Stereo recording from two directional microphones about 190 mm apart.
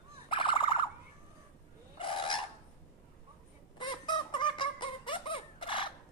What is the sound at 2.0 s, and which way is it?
Fowl, 25° left (ahead or behind).